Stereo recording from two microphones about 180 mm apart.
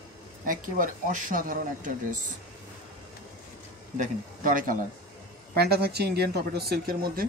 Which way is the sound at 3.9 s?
45° right (ahead or behind).